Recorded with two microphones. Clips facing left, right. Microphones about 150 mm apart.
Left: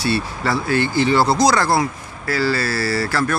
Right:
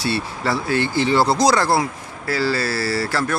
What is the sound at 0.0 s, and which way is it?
Speech, 25° right (ahead or behind).